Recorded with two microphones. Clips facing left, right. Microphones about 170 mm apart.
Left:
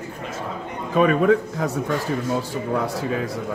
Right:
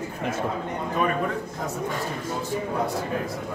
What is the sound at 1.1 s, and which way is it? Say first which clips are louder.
Speech: left 9 dB; 80° left.